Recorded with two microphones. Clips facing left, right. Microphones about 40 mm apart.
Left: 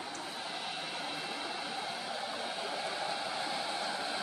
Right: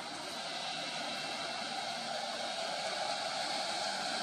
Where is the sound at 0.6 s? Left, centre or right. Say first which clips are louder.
Left 1 dB; centre.